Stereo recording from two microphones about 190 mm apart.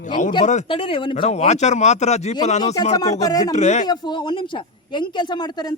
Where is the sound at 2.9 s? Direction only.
20° left (ahead or behind).